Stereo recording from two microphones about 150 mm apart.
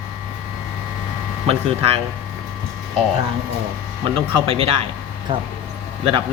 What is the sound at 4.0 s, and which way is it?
Speech, 40° right (ahead or behind).